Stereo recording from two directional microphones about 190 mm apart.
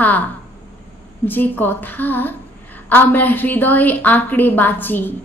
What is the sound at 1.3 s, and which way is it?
A woman's voice, 10° left (ahead or behind).